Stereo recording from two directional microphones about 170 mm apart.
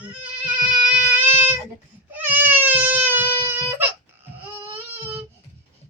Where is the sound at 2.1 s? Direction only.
10° right (ahead or behind).